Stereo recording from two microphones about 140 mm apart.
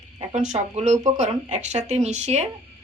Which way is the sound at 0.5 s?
55° right (ahead or behind).